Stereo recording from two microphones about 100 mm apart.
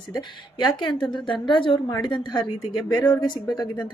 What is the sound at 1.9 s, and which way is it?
A woman's voice, 40° left (ahead or behind).